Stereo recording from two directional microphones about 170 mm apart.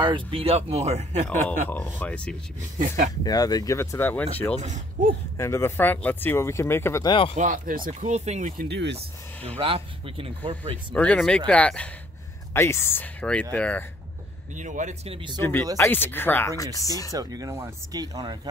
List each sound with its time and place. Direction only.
0.0 s speech: 30° right (ahead or behind)
1.5 s speech: 10° left (ahead or behind)
3.3 s speech: 20° left (ahead or behind)
4.6 s speech: 45° right (ahead or behind)
5.4 s speech: 15° left (ahead or behind)
7.3 s speech: 50° right (ahead or behind)
7.9 s speech: 40° right (ahead or behind)
8.5 s speech: 85° right
9.6 s speech: 30° right (ahead or behind)
11.0 s speech: 5° left (ahead or behind)
14.5 s speech: 45° right (ahead or behind)
15.8 s speech: 10° left (ahead or behind)
17.1 s speech: 20° right (ahead or behind)